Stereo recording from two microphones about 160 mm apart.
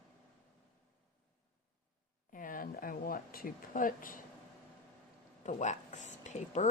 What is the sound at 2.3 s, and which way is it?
Speech, 55° left (ahead or behind).